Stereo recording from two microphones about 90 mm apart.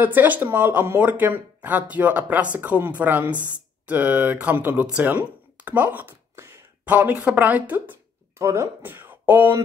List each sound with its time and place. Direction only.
0.0 s speech: 20° right (ahead or behind)
6.8 s speech: 15° right (ahead or behind)
8.4 s speech: 30° right (ahead or behind)